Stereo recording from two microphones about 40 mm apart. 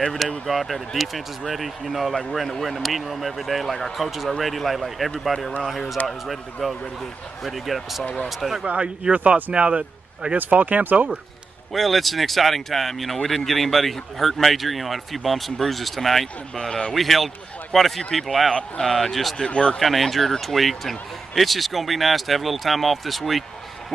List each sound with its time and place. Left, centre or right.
0.0 s speech: centre
8.6 s speech: right
10.3 s speech: right
11.7 s speech: centre
16.5 s a man's voice: centre
16.9 s speech: centre
18.5 s speech: left
18.9 s speech: centre
19.3 s speech: left
19.8 s speech: centre